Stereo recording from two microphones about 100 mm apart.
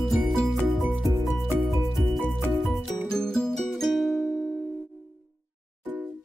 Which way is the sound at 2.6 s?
Centre (ahead or behind).